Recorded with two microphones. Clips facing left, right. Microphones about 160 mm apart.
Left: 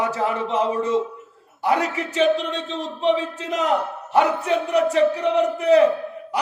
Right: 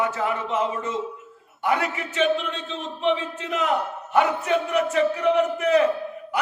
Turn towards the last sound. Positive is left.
turn(degrees=35)  # may be behind; listen again after turning